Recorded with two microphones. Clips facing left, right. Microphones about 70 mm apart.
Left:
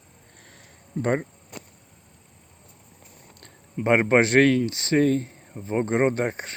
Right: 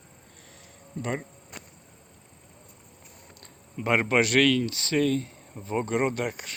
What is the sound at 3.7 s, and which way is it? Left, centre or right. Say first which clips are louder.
Speech: left 5 dB; left.